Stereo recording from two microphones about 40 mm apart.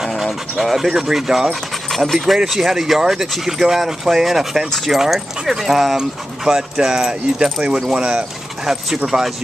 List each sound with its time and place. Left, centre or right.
0.0 s speech: centre
1.5 s speech: centre
5.9 s speech: centre